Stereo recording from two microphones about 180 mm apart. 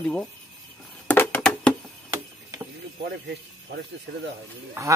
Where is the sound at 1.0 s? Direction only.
10° left (ahead or behind).